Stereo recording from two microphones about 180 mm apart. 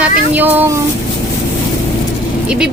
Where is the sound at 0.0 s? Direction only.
10° right (ahead or behind).